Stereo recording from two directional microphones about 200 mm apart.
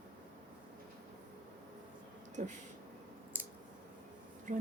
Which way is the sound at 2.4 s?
40° right (ahead or behind).